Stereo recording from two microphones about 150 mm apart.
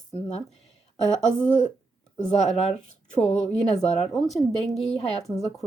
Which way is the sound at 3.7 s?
45° left (ahead or behind).